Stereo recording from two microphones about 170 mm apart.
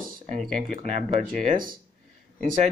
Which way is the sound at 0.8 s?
45° right (ahead or behind).